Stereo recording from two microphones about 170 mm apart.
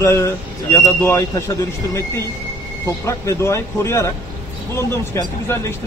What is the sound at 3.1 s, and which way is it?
Speech, 15° left (ahead or behind).